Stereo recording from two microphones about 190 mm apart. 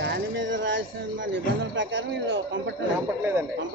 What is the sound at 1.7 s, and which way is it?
Speech, 75° right (ahead or behind).